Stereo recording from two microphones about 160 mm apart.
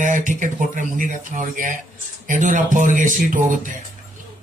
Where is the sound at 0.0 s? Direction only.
50° right (ahead or behind).